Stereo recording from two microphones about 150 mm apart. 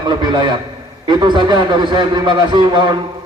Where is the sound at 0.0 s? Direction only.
30° right (ahead or behind).